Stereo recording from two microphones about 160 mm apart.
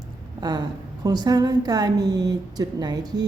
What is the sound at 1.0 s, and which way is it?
A woman's voice, 25° right (ahead or behind).